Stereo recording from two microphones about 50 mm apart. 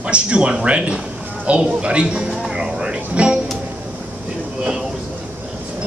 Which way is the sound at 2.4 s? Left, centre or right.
Centre.